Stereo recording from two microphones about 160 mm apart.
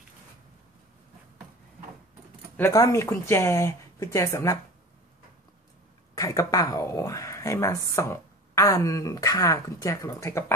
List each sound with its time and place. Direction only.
2.5 s speech: 15° left (ahead or behind)
6.1 s speech: 20° left (ahead or behind)